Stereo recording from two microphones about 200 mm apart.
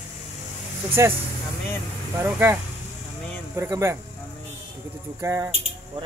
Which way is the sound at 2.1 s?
10° right (ahead or behind).